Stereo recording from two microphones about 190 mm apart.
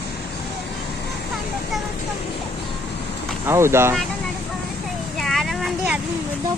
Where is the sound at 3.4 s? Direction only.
15° right (ahead or behind).